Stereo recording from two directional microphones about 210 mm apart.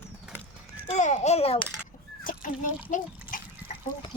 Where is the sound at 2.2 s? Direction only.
40° left (ahead or behind).